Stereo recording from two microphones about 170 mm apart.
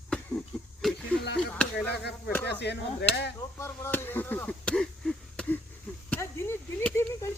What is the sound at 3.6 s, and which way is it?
Speech, 15° left (ahead or behind).